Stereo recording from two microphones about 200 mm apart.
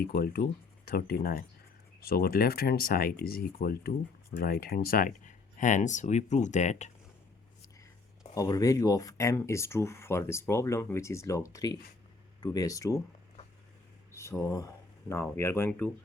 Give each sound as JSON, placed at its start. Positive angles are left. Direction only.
{"t": 0.0, "sound": "speech", "side_deg": 50}
{"t": 8.4, "sound": "speech", "side_deg": 15}
{"t": 14.1, "sound": "speech", "side_deg": 15}